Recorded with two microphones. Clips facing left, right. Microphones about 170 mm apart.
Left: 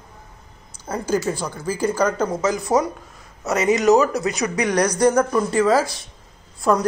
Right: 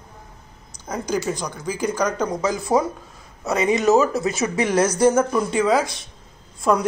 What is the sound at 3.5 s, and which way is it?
Speech, 20° right (ahead or behind).